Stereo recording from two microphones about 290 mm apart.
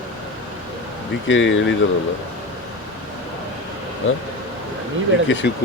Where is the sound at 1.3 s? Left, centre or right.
Left.